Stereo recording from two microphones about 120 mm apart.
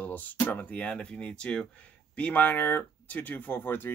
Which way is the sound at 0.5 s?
15° left (ahead or behind).